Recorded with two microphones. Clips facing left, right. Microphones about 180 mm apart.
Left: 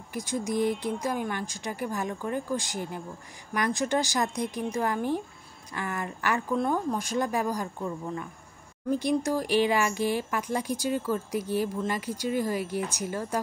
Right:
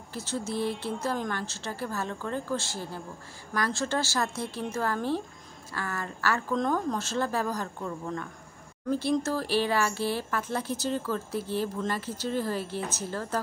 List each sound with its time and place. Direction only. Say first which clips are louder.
0.1 s speech: left 3 dB; 15° left (ahead or behind)